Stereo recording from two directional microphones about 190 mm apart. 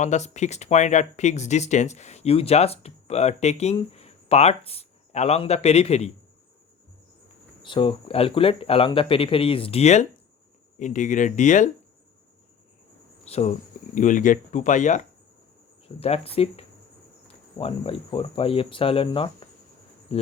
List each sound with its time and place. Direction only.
0.0 s speech: 40° left (ahead or behind)
7.6 s speech: 25° left (ahead or behind); by 11.7 s 40° left (ahead or behind)
13.2 s speech: 35° left (ahead or behind)